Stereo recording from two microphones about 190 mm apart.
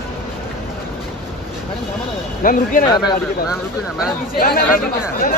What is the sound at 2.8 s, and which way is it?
Speech, 25° left (ahead or behind).